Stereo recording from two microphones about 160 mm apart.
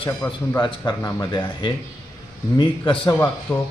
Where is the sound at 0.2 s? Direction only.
15° left (ahead or behind).